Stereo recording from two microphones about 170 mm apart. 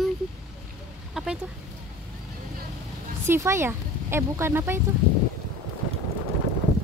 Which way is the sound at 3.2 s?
15° right (ahead or behind).